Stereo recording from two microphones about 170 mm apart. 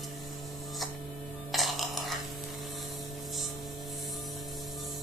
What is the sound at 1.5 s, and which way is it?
Music, centre (ahead or behind).